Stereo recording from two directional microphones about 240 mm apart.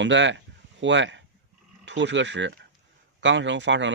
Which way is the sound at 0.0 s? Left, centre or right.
Right.